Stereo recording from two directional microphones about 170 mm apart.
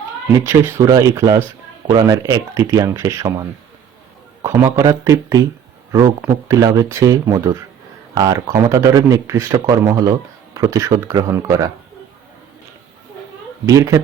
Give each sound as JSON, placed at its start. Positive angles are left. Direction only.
{"t": 0.4, "sound": "speech", "side_deg": -15}
{"t": 4.4, "sound": "speech", "side_deg": -15}
{"t": 13.7, "sound": "speech", "side_deg": -20}